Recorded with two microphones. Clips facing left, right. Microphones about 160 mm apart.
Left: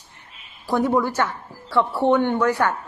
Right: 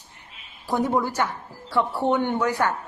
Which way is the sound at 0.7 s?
15° right (ahead or behind).